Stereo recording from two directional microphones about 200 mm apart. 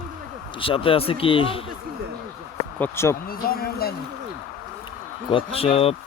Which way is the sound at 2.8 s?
15° left (ahead or behind).